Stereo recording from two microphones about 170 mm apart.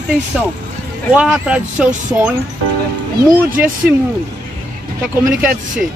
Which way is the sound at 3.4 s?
10° right (ahead or behind).